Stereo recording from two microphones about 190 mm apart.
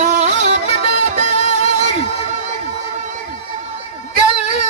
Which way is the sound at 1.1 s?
40° right (ahead or behind).